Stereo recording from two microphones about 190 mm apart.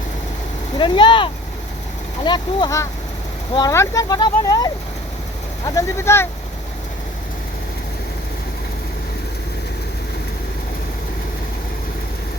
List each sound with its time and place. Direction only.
0.8 s speech: 25° left (ahead or behind)